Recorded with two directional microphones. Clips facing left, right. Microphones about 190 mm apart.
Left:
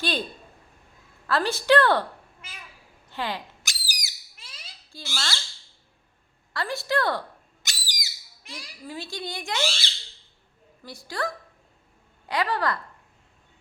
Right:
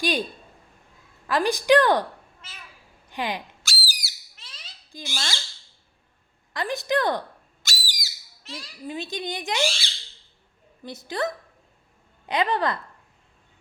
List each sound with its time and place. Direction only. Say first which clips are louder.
0.0 s a woman's voice: right 3 dB; 15° right (ahead or behind)
1.3 s a woman's voice: right 2 dB; 15° right (ahead or behind)
2.4 s speech: left 2 dB; 10° left (ahead or behind)
3.1 s speech: right 2 dB; 15° right (ahead or behind)
3.6 s a sound: right 4 dB; 15° left (ahead or behind)
4.9 s a sound: right 1 dB; 15° right (ahead or behind)
6.5 s speech: right 2 dB; 20° right (ahead or behind)
7.6 s whistle: right 3 dB; 20° left (ahead or behind)
8.9 s speech: right 4 dB; 20° right (ahead or behind)
10.8 s speech: right 3 dB; 20° right (ahead or behind)